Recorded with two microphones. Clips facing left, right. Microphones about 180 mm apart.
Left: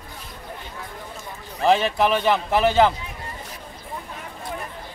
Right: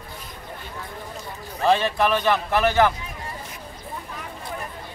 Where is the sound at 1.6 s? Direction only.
15° left (ahead or behind).